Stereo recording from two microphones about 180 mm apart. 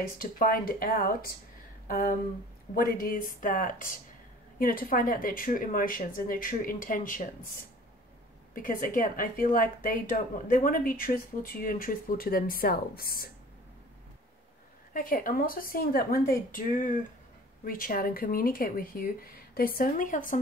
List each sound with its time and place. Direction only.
0.2 s a woman's voice: 50° left (ahead or behind)
8.5 s a woman's voice: 50° left (ahead or behind)
15.0 s a woman's voice: 50° left (ahead or behind)